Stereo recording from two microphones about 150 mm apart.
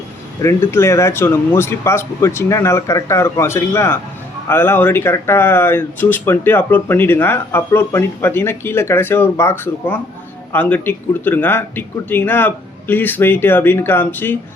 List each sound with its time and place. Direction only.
0.4 s speech: 20° left (ahead or behind)